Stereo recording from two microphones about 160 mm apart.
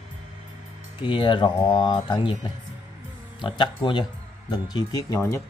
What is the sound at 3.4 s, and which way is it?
Speech, 30° left (ahead or behind).